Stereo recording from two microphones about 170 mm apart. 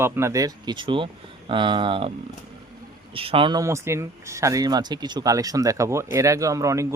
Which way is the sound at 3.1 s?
35° right (ahead or behind).